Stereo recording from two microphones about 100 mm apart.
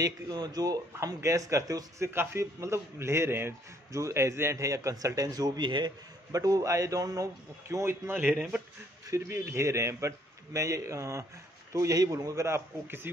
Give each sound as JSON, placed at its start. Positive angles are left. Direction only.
{"t": 0.0, "sound": "a man's voice", "side_deg": -40}
{"t": 9.1, "sound": "a man's voice", "side_deg": -30}